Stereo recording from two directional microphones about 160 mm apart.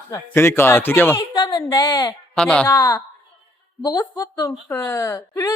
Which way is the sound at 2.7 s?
15° left (ahead or behind).